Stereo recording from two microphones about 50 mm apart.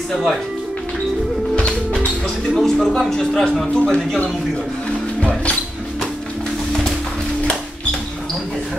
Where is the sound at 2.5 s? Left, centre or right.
Centre.